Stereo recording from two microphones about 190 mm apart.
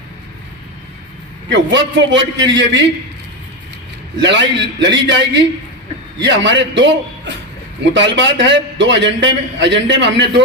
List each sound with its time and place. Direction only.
1.5 s a man's voice: 70° right (ahead or behind)
4.2 s a man's voice: 70° right (ahead or behind)